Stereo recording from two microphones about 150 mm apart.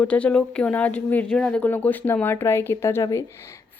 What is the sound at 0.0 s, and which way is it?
Speech, 10° left (ahead or behind).